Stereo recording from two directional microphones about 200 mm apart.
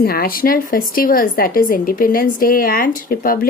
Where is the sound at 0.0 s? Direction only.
50° left (ahead or behind).